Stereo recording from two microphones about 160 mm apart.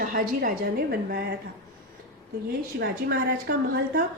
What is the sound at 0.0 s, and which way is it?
A woman's voice, 55° right (ahead or behind).